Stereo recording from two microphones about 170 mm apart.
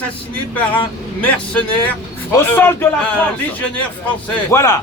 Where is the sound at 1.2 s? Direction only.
10° left (ahead or behind).